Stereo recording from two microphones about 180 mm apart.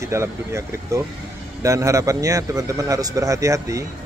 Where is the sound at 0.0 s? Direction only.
15° right (ahead or behind).